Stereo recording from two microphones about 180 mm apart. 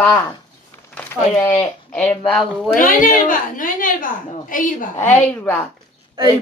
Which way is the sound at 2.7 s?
50° left (ahead or behind).